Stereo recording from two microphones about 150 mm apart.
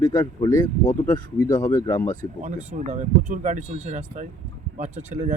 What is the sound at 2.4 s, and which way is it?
Speech, 50° right (ahead or behind).